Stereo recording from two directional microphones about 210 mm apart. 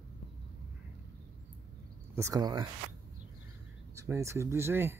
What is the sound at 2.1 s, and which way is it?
Speech, 15° right (ahead or behind).